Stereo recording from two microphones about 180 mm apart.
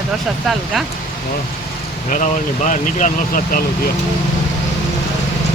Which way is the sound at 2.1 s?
45° left (ahead or behind).